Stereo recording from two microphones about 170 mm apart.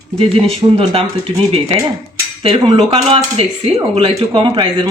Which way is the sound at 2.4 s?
35° right (ahead or behind).